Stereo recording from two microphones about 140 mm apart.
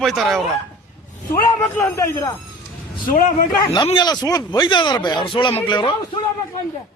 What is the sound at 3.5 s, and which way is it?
Speech, 30° left (ahead or behind).